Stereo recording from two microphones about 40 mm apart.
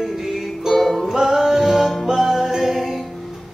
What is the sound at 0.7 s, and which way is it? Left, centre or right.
Music, centre.